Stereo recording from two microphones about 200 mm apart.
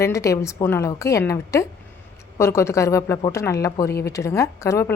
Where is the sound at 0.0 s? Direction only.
15° left (ahead or behind).